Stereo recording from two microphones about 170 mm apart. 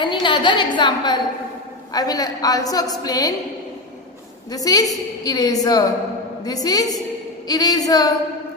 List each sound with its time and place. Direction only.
0.0 s a woman's voice: 30° left (ahead or behind)
4.5 s a woman's voice: 20° left (ahead or behind)